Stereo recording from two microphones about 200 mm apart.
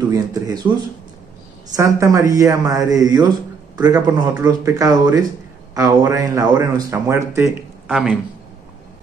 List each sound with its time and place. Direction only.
0.1 s speech: 20° right (ahead or behind)
1.8 s speech: 15° right (ahead or behind)
7.9 s speech: 5° right (ahead or behind)